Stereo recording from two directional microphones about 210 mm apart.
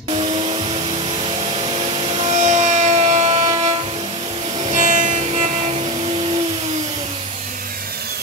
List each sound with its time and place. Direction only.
2.2 s music: 35° right (ahead or behind)
4.7 s music: 35° right (ahead or behind)